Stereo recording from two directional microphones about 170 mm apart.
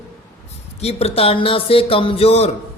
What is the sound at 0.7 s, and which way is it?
Speech, 35° left (ahead or behind).